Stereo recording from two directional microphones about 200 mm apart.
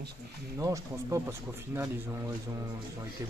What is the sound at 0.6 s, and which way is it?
Speech, 15° right (ahead or behind).